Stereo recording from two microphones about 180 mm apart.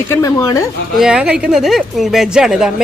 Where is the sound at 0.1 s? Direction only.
20° left (ahead or behind).